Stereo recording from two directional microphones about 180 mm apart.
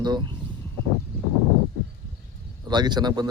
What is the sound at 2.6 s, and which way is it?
Speech, 25° right (ahead or behind).